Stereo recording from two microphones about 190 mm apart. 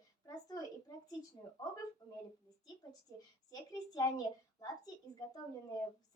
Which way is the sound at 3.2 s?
20° left (ahead or behind).